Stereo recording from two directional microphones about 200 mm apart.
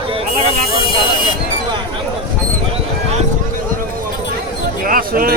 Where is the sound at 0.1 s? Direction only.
25° right (ahead or behind).